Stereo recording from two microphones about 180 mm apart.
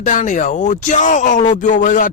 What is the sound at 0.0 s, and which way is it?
Speech, 45° left (ahead or behind).